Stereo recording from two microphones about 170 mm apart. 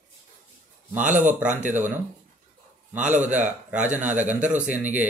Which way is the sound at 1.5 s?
45° right (ahead or behind).